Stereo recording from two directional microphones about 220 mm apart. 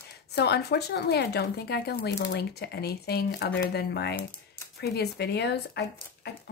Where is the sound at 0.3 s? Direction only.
50° left (ahead or behind).